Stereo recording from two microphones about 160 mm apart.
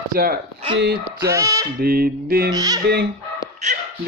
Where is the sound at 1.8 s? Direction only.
70° right (ahead or behind).